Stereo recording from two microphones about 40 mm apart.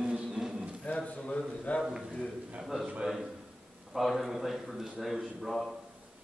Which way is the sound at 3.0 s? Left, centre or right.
Centre.